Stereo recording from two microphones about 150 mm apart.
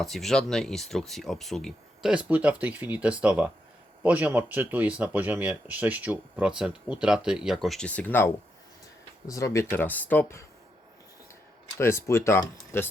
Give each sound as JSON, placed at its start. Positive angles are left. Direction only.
{"t": 0.0, "sound": "speech", "side_deg": 0}
{"t": 11.8, "sound": "speech", "side_deg": 15}